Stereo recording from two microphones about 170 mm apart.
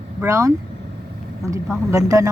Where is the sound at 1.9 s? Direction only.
20° right (ahead or behind).